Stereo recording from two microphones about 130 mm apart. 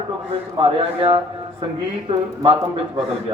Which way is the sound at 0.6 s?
45° right (ahead or behind).